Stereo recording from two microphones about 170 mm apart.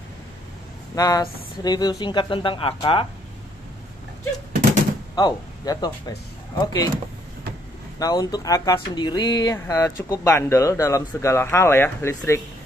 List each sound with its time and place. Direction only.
0.9 s speech: 20° left (ahead or behind)
5.1 s speech: 25° left (ahead or behind)
8.0 s speech: 20° left (ahead or behind)